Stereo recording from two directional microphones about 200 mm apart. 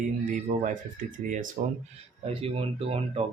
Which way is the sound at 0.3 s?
40° right (ahead or behind).